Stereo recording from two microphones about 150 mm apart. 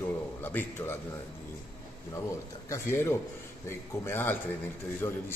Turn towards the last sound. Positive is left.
turn(degrees=15)  # may be behind; listen again after turning